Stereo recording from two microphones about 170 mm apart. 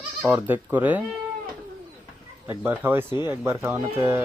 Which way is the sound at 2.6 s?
10° right (ahead or behind).